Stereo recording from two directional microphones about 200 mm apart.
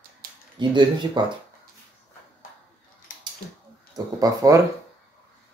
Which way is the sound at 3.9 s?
15° right (ahead or behind).